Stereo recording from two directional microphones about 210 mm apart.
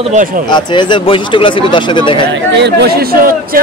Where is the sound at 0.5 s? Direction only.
20° left (ahead or behind).